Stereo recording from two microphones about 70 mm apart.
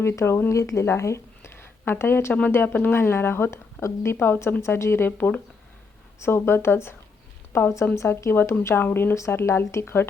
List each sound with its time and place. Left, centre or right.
0.0 s a woman's voice: left
5.1 s speech: left
6.1 s a woman's voice: left
9.1 s a woman's voice: left